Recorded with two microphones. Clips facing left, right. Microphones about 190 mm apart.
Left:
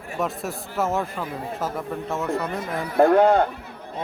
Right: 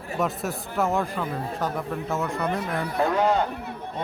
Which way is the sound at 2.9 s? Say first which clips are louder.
Left 7 dB; 55° left (ahead or behind).